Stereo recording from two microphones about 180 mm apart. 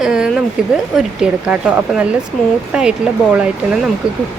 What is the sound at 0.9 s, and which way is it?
A woman's voice, 5° right (ahead or behind).